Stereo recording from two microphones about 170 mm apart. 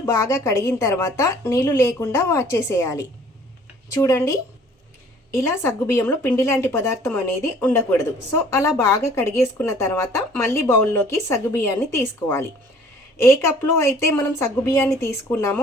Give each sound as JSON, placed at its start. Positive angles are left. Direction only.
{"t": 0.0, "sound": "speech", "side_deg": 15}